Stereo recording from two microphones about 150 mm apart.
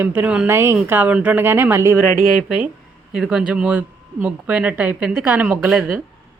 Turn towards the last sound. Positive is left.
turn(degrees=-10)  # may be behind; listen again after turning